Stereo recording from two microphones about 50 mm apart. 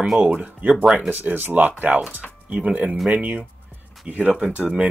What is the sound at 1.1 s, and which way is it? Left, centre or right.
Speech, right.